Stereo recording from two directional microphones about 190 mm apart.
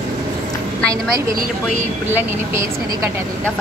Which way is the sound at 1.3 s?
45° right (ahead or behind).